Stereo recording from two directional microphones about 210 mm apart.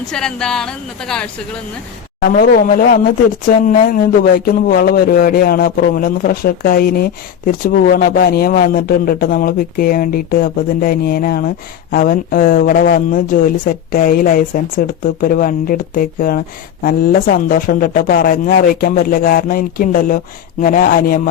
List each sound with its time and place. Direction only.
0.1 s a woman's voice: 5° left (ahead or behind)
2.2 s speech: 45° left (ahead or behind)